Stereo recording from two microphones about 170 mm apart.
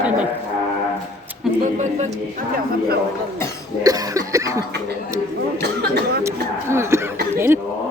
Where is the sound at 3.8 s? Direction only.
20° right (ahead or behind).